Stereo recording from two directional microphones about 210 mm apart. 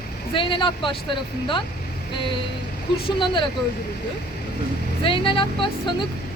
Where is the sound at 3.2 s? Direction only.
20° left (ahead or behind).